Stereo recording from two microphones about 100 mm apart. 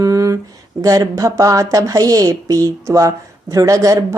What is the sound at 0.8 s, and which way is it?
Speech, 35° right (ahead or behind).